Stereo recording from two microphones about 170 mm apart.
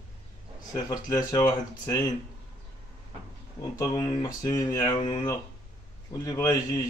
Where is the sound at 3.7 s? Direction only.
20° left (ahead or behind).